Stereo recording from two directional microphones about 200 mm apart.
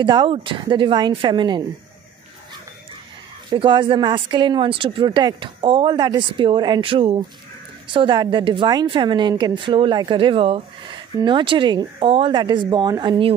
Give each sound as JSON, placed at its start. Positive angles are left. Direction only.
{"t": 0.0, "sound": "a woman's voice", "side_deg": -25}
{"t": 3.4, "sound": "a woman's voice", "side_deg": -25}